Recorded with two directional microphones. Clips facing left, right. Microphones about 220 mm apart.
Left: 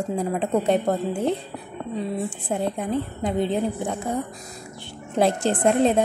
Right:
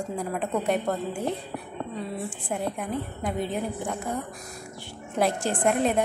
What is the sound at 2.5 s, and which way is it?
A woman's voice, 25° left (ahead or behind).